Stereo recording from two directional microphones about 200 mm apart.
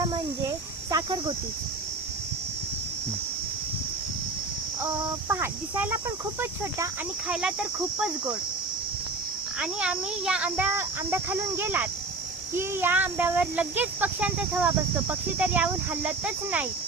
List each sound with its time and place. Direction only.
0.1 s cricket: 20° right (ahead or behind)
5.3 s speech: 10° right (ahead or behind)
7.3 s cricket: 5° right (ahead or behind)
9.6 s speech: 5° right (ahead or behind)